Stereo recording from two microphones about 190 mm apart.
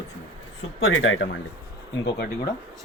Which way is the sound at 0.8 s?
90° left.